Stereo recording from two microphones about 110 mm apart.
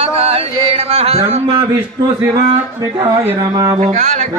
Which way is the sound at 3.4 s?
35° right (ahead or behind).